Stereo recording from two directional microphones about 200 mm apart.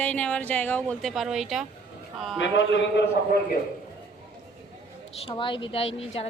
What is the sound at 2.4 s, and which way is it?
Speech, 65° left (ahead or behind).